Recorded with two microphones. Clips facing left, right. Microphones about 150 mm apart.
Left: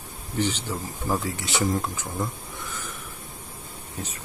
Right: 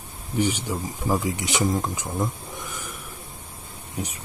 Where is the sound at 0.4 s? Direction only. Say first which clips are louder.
Right 3 dB; 10° right (ahead or behind).